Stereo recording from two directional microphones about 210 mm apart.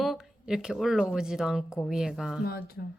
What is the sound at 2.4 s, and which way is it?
Speech, 45° left (ahead or behind).